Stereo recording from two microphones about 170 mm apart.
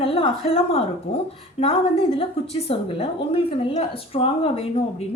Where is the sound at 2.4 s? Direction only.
35° left (ahead or behind).